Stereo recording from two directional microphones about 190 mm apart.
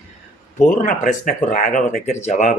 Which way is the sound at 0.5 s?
45° left (ahead or behind).